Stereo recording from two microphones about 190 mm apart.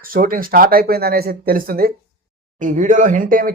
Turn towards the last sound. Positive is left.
turn(degrees=-45)  # may be behind; listen again after turning